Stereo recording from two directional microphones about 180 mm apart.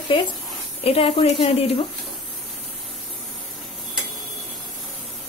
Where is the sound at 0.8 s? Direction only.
30° left (ahead or behind).